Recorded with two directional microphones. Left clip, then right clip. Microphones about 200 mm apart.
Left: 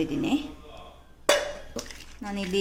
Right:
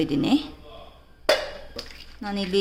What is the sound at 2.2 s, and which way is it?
Speech, 20° right (ahead or behind).